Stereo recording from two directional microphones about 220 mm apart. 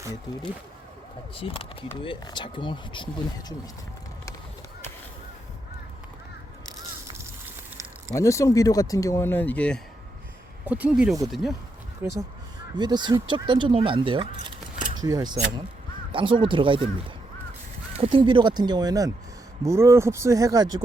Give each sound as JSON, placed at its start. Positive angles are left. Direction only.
{"t": 1.4, "sound": "speech", "side_deg": 25}
{"t": 8.1, "sound": "speech", "side_deg": 15}
{"t": 10.7, "sound": "speech", "side_deg": -5}
{"t": 12.7, "sound": "speech", "side_deg": -20}
{"t": 17.9, "sound": "speech", "side_deg": -25}